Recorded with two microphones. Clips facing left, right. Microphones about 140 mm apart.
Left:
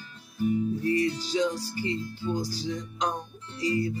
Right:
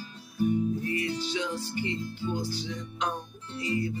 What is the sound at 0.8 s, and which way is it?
Music, 35° left (ahead or behind).